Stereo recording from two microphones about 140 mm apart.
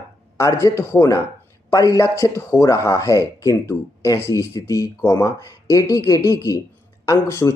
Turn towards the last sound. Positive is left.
turn(degrees=15)  # may be behind; listen again after turning